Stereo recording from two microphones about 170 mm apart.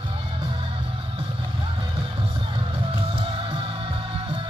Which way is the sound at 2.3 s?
30° right (ahead or behind).